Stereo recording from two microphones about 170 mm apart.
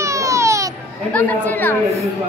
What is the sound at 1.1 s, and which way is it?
A woman's voice, 10° left (ahead or behind).